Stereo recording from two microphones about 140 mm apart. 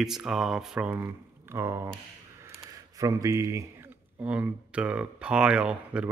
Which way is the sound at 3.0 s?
25° right (ahead or behind).